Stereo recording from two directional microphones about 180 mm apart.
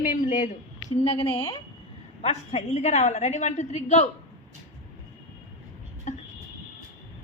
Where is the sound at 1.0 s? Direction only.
30° left (ahead or behind).